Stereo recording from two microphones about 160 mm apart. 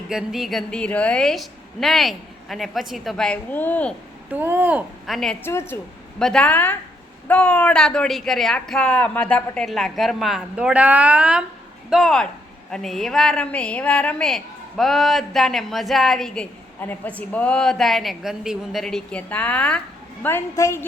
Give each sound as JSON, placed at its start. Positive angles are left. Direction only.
{"t": 0.1, "sound": "a woman's voice", "side_deg": -5}
{"t": 4.3, "sound": "speech", "side_deg": -15}
{"t": 5.0, "sound": "a woman's voice", "side_deg": 0}
{"t": 5.4, "sound": "a woman's voice", "side_deg": 15}
{"t": 6.1, "sound": "a woman's voice", "side_deg": 5}